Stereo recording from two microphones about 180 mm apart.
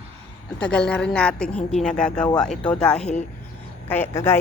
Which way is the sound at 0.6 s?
5° left (ahead or behind).